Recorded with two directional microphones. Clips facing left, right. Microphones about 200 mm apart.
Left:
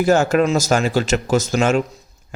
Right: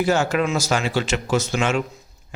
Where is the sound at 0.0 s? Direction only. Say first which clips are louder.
Left 5 dB; 45° left (ahead or behind).